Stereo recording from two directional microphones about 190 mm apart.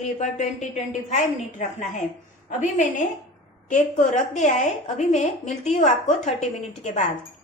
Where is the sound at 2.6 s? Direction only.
40° left (ahead or behind).